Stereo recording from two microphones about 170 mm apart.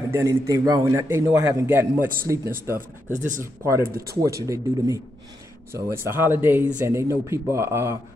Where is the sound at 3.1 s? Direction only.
45° right (ahead or behind).